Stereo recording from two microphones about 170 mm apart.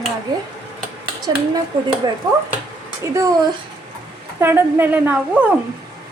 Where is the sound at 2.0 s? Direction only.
25° right (ahead or behind).